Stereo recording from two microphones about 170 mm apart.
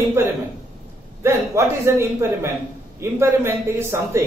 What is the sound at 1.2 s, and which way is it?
A man's voice, 15° right (ahead or behind).